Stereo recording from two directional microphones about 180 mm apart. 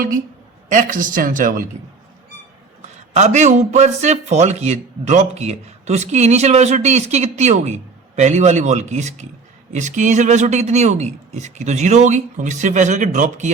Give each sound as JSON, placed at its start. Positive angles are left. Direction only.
{"t": 0.7, "sound": "speech", "side_deg": -50}
{"t": 3.1, "sound": "a man's voice", "side_deg": -40}